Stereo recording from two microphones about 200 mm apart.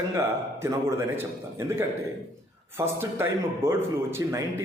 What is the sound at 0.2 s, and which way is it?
A man's voice, 15° right (ahead or behind).